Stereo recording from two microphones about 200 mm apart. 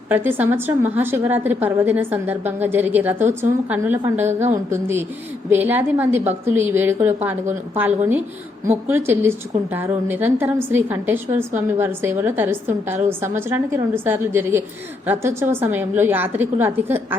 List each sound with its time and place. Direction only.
0.1 s a woman's voice: 10° right (ahead or behind)
4.3 s a woman's voice: 35° right (ahead or behind)
4.7 s a woman's voice: 10° right (ahead or behind)